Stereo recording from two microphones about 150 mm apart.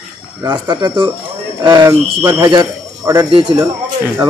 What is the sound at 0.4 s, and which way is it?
Speech, 25° right (ahead or behind).